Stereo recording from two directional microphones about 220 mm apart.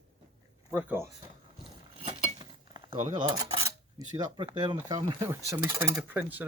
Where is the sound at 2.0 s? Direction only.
35° left (ahead or behind).